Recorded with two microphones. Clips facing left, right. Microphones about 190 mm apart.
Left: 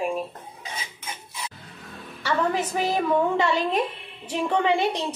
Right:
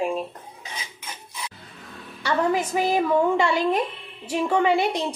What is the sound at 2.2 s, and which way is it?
A woman's voice, 15° right (ahead or behind).